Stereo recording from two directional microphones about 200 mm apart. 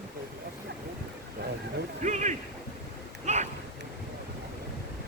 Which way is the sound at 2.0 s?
35° right (ahead or behind).